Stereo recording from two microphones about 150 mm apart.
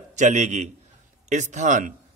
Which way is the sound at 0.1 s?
50° right (ahead or behind).